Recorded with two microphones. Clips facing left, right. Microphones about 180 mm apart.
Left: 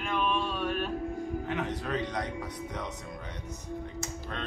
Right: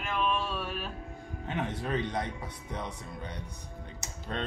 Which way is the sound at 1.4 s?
25° right (ahead or behind).